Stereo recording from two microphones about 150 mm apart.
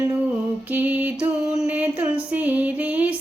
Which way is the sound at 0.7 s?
10° right (ahead or behind).